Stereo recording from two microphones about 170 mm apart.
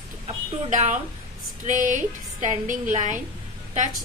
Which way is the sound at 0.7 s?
45° right (ahead or behind).